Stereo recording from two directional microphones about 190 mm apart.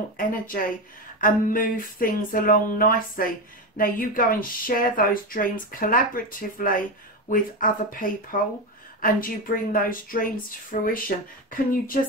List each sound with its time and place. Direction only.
0.2 s speech: 45° left (ahead or behind)